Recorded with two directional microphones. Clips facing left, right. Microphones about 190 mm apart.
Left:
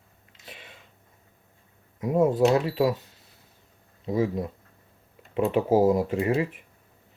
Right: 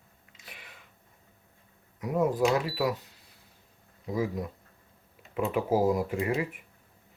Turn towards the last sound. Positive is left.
turn(degrees=25)  # may be behind; listen again after turning